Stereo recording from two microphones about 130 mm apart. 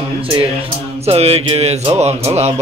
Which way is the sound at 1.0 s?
50° right (ahead or behind).